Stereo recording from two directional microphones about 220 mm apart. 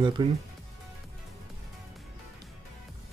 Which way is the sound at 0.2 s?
20° right (ahead or behind).